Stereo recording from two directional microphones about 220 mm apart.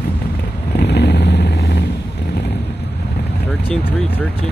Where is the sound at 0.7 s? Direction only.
50° left (ahead or behind).